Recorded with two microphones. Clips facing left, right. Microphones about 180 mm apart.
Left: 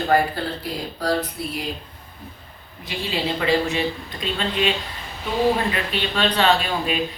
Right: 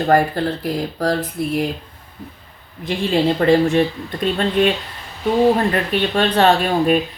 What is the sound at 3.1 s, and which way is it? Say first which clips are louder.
Speech: right 7 dB; 50° right (ahead or behind).